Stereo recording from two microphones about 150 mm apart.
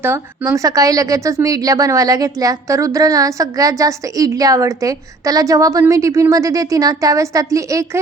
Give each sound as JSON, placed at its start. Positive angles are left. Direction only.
{"t": 0.0, "sound": "a woman's voice", "side_deg": -20}